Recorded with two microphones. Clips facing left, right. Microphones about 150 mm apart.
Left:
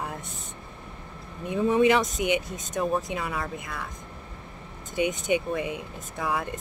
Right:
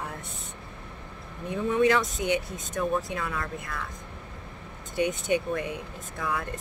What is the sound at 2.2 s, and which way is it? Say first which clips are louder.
Speech: left 1 dB; 20° left (ahead or behind).